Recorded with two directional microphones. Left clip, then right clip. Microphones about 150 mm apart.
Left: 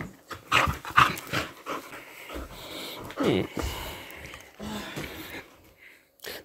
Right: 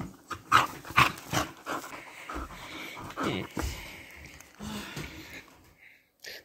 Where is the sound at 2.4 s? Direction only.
5° right (ahead or behind).